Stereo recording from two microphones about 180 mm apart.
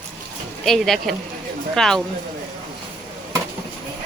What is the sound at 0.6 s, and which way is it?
Speech, centre (ahead or behind).